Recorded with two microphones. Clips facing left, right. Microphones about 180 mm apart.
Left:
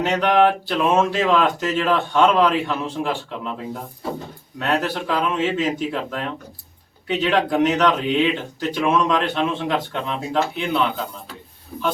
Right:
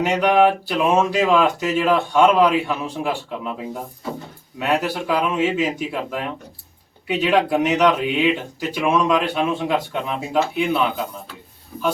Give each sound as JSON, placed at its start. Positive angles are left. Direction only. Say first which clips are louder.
{"t": 0.0, "sound": "speech", "louder": "right 1 dB", "side_deg": -10}